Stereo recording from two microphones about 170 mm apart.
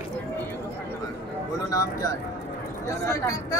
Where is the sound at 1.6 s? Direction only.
20° left (ahead or behind).